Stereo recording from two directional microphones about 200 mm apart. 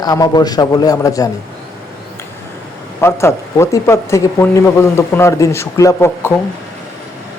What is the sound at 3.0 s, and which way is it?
Speech, 15° left (ahead or behind).